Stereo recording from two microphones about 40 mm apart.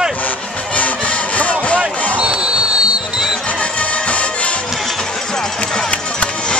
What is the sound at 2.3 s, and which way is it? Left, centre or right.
Music, centre.